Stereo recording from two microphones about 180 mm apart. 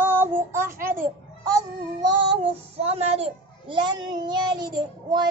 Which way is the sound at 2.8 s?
35° right (ahead or behind).